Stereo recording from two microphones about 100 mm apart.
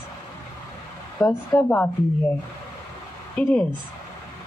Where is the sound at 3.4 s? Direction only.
10° left (ahead or behind).